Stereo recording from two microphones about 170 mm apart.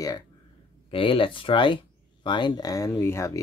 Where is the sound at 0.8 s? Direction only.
30° left (ahead or behind).